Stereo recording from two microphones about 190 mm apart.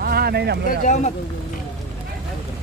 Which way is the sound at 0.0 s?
55° right (ahead or behind).